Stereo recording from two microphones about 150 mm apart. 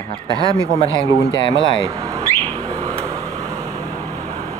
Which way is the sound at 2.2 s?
20° right (ahead or behind).